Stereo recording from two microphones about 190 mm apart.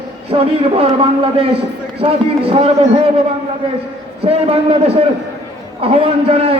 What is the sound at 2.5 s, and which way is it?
Speech, 30° right (ahead or behind).